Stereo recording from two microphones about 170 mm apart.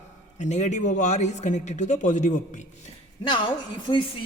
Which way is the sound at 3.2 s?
30° left (ahead or behind).